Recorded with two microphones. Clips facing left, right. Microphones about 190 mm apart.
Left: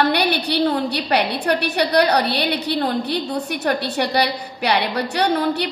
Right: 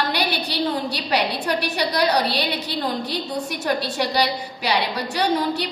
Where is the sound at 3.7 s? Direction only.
60° left (ahead or behind).